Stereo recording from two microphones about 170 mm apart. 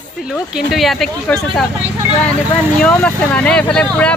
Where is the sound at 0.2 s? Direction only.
5° right (ahead or behind).